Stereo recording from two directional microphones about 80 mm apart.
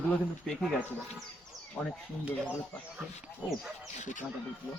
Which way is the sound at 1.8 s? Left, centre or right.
Centre.